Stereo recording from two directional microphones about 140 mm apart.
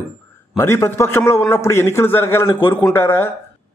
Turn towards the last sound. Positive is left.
turn(degrees=15)  # may be behind; listen again after turning